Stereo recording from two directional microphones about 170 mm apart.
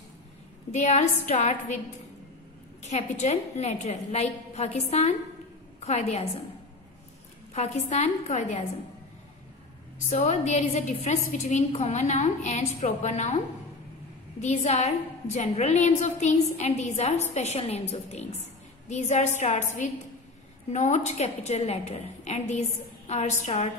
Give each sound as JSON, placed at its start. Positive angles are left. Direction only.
{"t": 0.7, "sound": "a woman's voice", "side_deg": 45}
{"t": 2.8, "sound": "a woman's voice", "side_deg": 40}
{"t": 7.5, "sound": "a woman's voice", "side_deg": 40}
{"t": 10.0, "sound": "a woman's voice", "side_deg": 40}
{"t": 14.4, "sound": "a woman's voice", "side_deg": 45}